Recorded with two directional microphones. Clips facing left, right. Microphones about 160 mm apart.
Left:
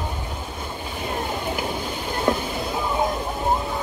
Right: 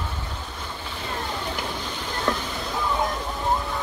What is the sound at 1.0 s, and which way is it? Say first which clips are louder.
Vehicle: left 4 dB; 15° left (ahead or behind).